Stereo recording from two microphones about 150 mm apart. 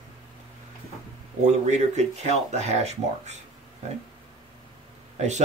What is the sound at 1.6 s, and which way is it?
Speech, 50° right (ahead or behind).